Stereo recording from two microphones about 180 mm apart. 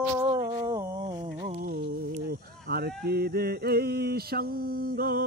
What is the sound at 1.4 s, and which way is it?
Speech, 50° right (ahead or behind).